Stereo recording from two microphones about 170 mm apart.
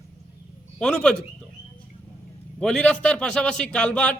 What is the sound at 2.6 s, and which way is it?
A man's voice, 5° left (ahead or behind).